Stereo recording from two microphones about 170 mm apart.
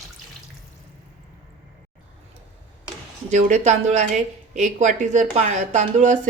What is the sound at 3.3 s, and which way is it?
A woman's voice, 45° right (ahead or behind).